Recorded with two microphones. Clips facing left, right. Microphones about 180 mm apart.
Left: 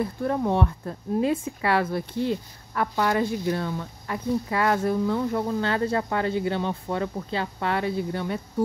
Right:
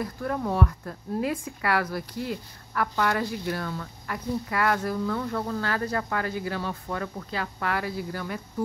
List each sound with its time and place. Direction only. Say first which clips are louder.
0.0 s speech: left 4 dB; 25° left (ahead or behind)